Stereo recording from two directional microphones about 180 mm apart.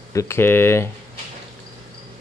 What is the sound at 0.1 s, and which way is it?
Speech, 15° left (ahead or behind).